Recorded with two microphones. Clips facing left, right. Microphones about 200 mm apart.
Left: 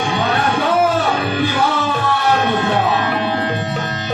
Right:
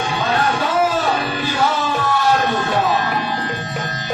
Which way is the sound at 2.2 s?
60° left (ahead or behind).